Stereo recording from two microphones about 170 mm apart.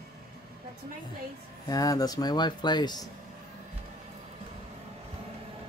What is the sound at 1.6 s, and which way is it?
Speech, 20° left (ahead or behind).